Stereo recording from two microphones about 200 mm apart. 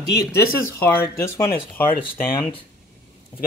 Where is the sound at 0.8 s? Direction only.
10° left (ahead or behind).